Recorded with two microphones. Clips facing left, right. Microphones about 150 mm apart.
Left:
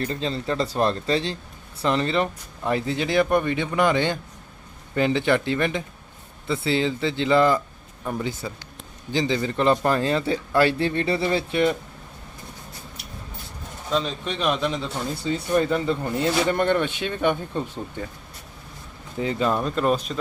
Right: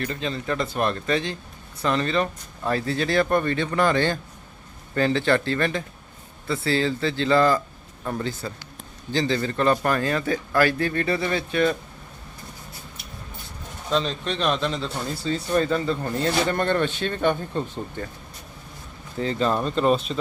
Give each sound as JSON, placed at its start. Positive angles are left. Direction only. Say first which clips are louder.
{"t": 0.0, "sound": "speech", "louder": "left 2 dB", "side_deg": 30}
{"t": 13.9, "sound": "speech", "louder": "right 1 dB", "side_deg": 5}
{"t": 19.2, "sound": "speech", "louder": "even", "side_deg": 10}